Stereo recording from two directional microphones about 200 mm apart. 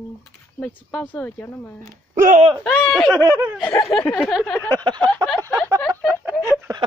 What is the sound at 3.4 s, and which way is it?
Speech, 10° right (ahead or behind).